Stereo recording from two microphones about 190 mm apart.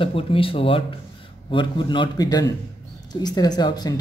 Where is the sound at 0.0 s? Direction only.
30° left (ahead or behind).